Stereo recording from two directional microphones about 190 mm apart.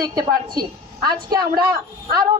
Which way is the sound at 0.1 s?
20° right (ahead or behind).